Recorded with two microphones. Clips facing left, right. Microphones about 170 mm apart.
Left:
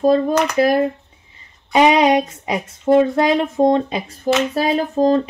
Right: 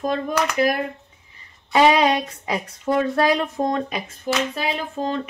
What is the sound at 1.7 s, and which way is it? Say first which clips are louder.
Speech: left 3 dB; 20° left (ahead or behind).